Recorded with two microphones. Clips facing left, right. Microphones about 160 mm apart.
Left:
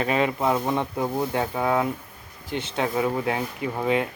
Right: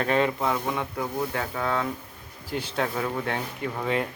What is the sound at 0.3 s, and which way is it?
Speech, 20° left (ahead or behind).